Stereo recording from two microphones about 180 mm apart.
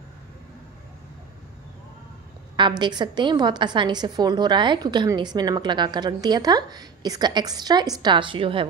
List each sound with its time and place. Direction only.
2.8 s a woman's voice: 25° right (ahead or behind)